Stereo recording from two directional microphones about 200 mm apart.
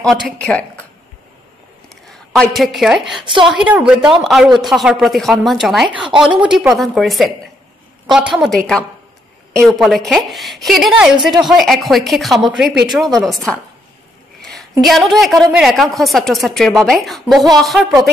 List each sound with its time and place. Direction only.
0.0 s a woman's voice: centre (ahead or behind)
2.0 s a woman's voice: centre (ahead or behind)
3.2 s a woman's voice: 25° right (ahead or behind)
3.4 s a woman's voice: 5° right (ahead or behind)